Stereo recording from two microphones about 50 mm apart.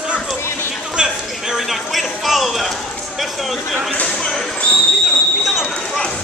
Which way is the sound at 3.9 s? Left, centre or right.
Left.